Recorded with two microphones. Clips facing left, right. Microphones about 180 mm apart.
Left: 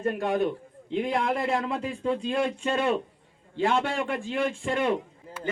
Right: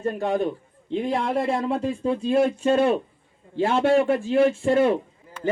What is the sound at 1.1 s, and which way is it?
Speech, 30° right (ahead or behind).